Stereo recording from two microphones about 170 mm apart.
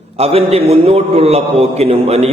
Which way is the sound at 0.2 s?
35° right (ahead or behind).